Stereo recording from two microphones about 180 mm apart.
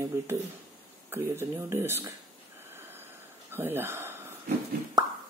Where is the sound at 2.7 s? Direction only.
10° right (ahead or behind).